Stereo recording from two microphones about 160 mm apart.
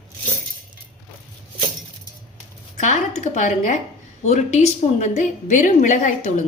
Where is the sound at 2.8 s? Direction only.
45° left (ahead or behind).